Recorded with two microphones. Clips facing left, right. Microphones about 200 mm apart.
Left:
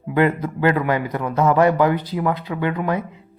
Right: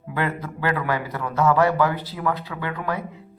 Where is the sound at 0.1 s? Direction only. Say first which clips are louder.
Left 8 dB; 20° left (ahead or behind).